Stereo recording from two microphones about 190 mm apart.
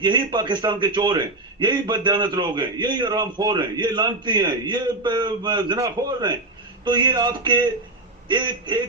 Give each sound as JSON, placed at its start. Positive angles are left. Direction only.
{"t": 0.0, "sound": "a man's voice", "side_deg": -25}